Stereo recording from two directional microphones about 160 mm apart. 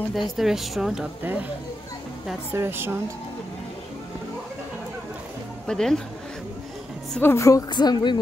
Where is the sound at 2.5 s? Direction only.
15° right (ahead or behind).